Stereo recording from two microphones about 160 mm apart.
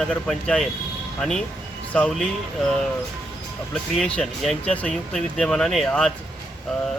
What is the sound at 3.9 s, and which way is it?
Speech, 5° left (ahead or behind).